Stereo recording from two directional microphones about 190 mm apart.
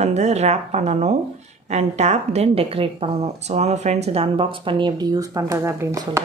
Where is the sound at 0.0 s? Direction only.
35° right (ahead or behind); by 6.2 s 15° right (ahead or behind).